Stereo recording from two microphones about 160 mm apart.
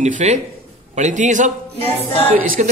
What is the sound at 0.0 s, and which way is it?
A man's voice, 45° right (ahead or behind).